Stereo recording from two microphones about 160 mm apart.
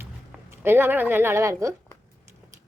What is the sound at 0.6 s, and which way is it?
A woman's voice, 15° right (ahead or behind).